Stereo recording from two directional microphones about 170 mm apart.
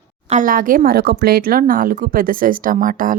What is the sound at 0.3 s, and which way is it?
A woman's voice, 50° right (ahead or behind).